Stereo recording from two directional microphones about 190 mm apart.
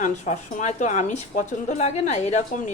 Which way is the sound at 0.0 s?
40° left (ahead or behind).